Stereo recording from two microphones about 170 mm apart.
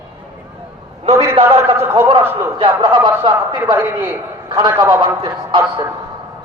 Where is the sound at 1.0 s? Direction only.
35° right (ahead or behind).